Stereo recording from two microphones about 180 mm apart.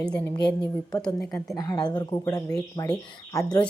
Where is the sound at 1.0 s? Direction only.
5° left (ahead or behind).